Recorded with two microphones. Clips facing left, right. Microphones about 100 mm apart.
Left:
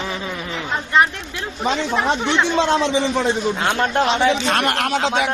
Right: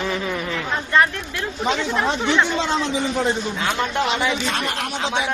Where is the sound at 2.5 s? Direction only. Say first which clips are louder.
Left 5 dB; 80° left.